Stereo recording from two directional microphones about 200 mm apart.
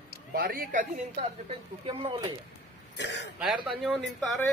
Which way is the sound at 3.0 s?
60° left (ahead or behind).